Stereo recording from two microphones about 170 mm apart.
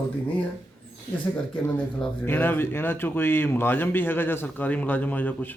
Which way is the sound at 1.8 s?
10° left (ahead or behind).